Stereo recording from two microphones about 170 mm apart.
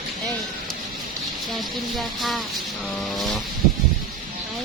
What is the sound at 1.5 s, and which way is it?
Speech, centre (ahead or behind).